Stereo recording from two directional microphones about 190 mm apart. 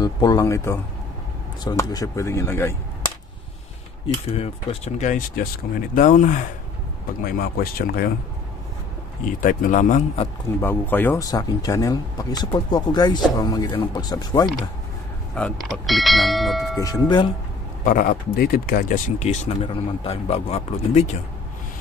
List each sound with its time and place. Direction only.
0.0 s speech: 20° left (ahead or behind)
4.3 s speech: 35° left (ahead or behind); by 8.1 s 50° left (ahead or behind)
9.4 s speech: 45° left (ahead or behind)
10.6 s speech: 10° left (ahead or behind)
15.3 s speech: centre (ahead or behind)
16.7 s speech: 20° left (ahead or behind)
17.8 s speech: 50° left (ahead or behind)